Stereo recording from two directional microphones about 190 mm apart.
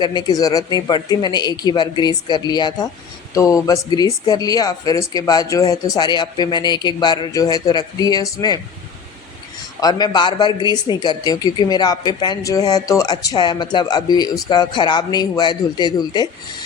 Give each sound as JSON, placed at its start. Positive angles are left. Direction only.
{"t": 0.0, "sound": "a woman's voice", "side_deg": 20}
{"t": 9.8, "sound": "a woman's voice", "side_deg": 20}